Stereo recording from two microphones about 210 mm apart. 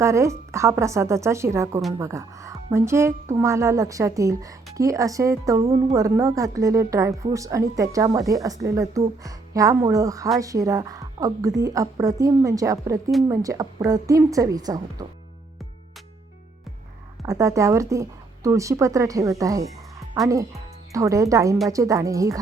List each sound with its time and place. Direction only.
0.0 s speech: 15° right (ahead or behind)
17.2 s speech: 15° right (ahead or behind)